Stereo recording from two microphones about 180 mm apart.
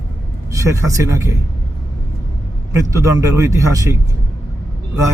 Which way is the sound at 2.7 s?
15° right (ahead or behind).